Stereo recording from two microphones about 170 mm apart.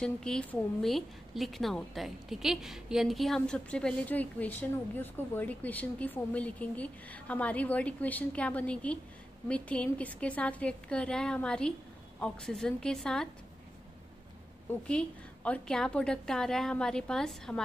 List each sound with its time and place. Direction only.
0.0 s a woman's voice: 5° left (ahead or behind)
14.9 s a woman's voice: 5° left (ahead or behind)